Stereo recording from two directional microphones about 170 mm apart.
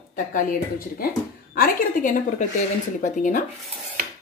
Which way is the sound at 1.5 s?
55° left (ahead or behind).